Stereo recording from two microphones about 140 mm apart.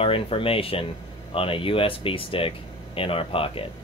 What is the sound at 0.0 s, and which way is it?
Speech, 40° left (ahead or behind).